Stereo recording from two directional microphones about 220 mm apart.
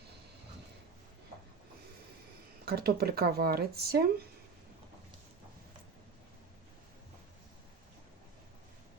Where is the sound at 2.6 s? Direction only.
45° right (ahead or behind).